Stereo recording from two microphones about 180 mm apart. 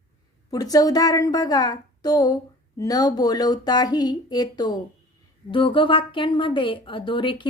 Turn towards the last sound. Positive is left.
turn(degrees=25)  # may be behind; listen again after turning